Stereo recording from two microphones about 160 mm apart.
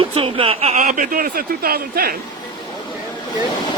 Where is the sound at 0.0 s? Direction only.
35° right (ahead or behind); by 2.1 s 70° right (ahead or behind).